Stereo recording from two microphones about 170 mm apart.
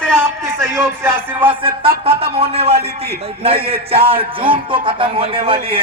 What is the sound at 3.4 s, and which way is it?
A man's voice, 35° right (ahead or behind).